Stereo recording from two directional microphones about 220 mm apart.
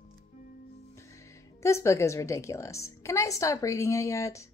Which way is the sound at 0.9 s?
15° left (ahead or behind).